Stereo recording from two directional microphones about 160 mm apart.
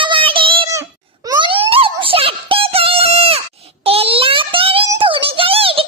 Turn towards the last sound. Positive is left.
turn(degrees=-35)  # may be behind; listen again after turning